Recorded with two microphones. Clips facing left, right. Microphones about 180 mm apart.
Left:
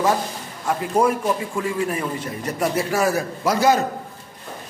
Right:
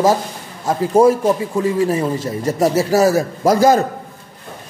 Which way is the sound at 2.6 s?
40° right (ahead or behind).